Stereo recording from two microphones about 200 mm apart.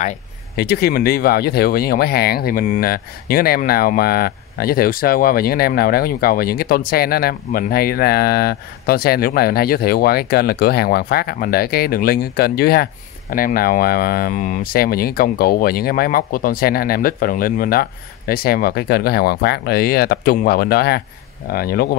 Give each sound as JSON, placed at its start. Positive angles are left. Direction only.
{"t": 0.6, "sound": "speech", "side_deg": 50}